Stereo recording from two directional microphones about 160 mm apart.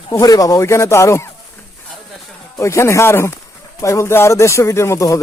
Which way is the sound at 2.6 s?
20° left (ahead or behind).